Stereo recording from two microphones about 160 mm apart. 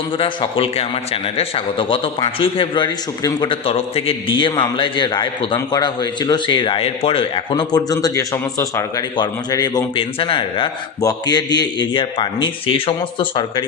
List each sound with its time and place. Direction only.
0.2 s a man's voice: 35° left (ahead or behind)